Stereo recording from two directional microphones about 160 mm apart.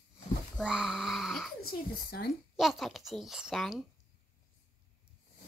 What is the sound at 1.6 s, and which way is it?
Speech, 70° left (ahead or behind).